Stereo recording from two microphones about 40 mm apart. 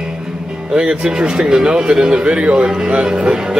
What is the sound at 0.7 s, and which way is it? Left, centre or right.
Speech, centre.